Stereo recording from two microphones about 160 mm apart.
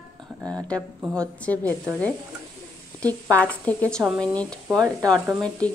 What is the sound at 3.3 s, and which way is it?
A woman's voice, 10° left (ahead or behind).